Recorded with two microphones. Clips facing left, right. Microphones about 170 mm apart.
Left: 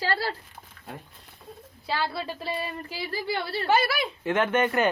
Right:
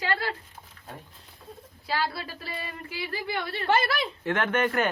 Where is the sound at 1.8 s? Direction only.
25° left (ahead or behind).